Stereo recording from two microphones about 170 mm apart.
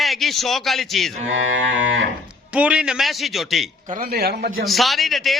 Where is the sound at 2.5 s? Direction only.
5° right (ahead or behind).